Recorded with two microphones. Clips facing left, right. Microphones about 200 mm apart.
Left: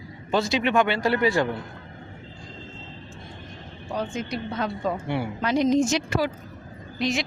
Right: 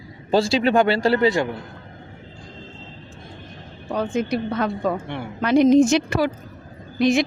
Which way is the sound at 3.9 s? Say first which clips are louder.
Right 7 dB; 60° right (ahead or behind).